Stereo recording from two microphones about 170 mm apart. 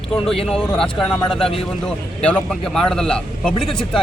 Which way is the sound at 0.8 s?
5° left (ahead or behind).